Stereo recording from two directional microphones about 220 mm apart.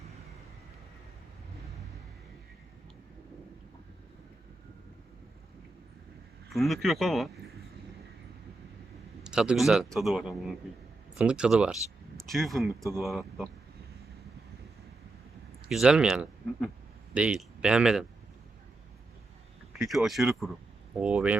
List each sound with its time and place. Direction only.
6.5 s a man's voice: centre (ahead or behind)
9.2 s a man's voice: 5° right (ahead or behind)
15.7 s a man's voice: 5° right (ahead or behind)
19.8 s a man's voice: centre (ahead or behind)